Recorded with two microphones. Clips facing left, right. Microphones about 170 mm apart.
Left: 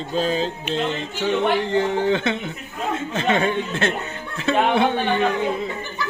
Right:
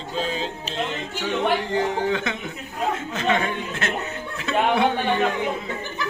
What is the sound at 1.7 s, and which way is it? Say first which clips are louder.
A woman's voice: left 3 dB; 30° left (ahead or behind).